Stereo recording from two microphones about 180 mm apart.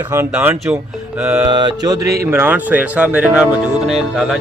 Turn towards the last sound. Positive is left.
turn(degrees=0)  # may be behind; listen again after turning